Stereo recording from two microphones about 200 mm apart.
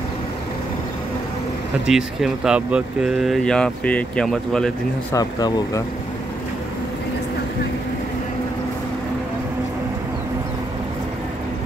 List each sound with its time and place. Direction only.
1.9 s speech: centre (ahead or behind)
5.1 s speech: 15° left (ahead or behind)